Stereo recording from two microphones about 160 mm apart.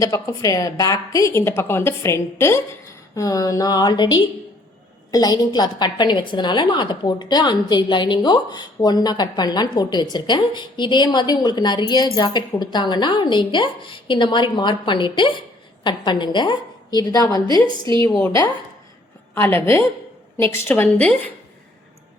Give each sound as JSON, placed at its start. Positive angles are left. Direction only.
{"t": 0.0, "sound": "a woman's voice", "side_deg": 20}
{"t": 19.3, "sound": "a woman's voice", "side_deg": 15}